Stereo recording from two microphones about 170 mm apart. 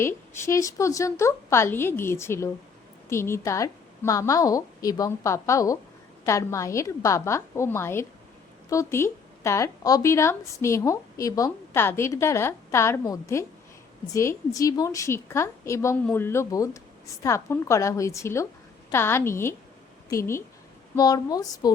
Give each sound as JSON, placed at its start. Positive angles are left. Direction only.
{"t": 0.0, "sound": "a woman's voice", "side_deg": 15}